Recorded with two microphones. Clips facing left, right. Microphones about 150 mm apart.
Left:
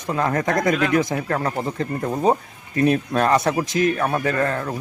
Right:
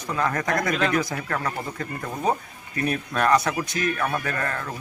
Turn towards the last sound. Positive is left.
turn(degrees=35)  # may be behind; listen again after turning